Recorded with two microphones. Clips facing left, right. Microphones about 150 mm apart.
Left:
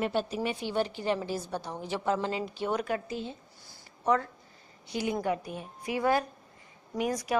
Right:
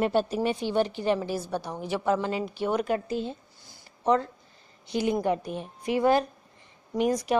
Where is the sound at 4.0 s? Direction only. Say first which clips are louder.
Right 3 dB; 25° right (ahead or behind).